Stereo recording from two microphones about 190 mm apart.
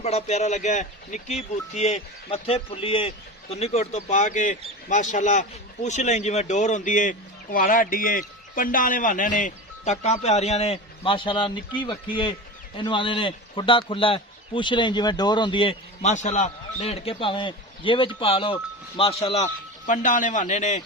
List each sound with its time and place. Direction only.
0.0 s a man's voice: 35° left (ahead or behind)